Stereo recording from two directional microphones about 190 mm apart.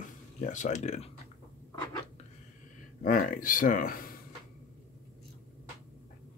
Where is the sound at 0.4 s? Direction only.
40° left (ahead or behind).